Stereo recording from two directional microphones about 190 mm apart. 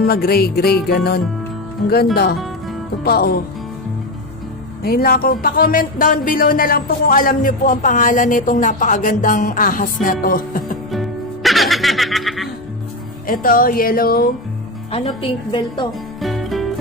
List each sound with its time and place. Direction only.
0.0 s music: 55° left (ahead or behind)
3.0 s speech: 55° left (ahead or behind)
4.8 s speech: 50° left (ahead or behind)
10.9 s music: centre (ahead or behind)
13.3 s speech: 45° left (ahead or behind)
14.9 s a woman's voice: 30° left (ahead or behind)
16.2 s music: centre (ahead or behind)